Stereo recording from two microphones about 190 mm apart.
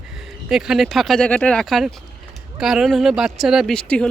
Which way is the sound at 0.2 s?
Centre (ahead or behind).